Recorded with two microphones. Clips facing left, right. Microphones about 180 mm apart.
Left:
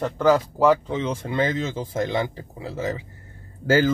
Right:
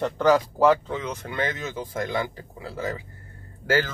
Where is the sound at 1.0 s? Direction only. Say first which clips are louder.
Left 5 dB; 30° left (ahead or behind).